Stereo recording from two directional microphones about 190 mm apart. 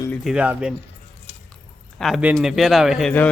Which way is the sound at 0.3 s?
5° right (ahead or behind).